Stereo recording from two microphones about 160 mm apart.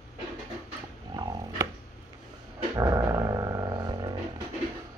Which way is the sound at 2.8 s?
20° right (ahead or behind).